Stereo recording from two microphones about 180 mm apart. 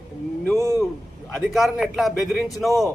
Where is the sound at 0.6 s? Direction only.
15° right (ahead or behind).